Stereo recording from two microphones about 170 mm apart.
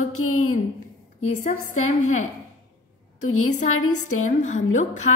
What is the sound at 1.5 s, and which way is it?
Speech, 45° left (ahead or behind).